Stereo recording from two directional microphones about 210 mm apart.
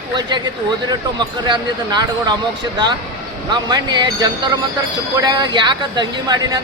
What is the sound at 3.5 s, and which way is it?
Speech, 20° right (ahead or behind).